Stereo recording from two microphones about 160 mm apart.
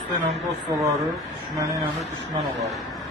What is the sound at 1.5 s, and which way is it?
Speech, 20° right (ahead or behind).